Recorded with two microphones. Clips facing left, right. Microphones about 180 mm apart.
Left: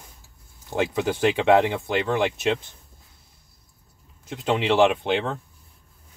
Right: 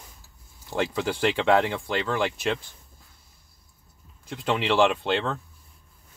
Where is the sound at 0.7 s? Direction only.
20° left (ahead or behind).